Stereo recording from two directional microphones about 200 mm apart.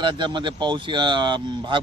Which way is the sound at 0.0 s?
25° right (ahead or behind).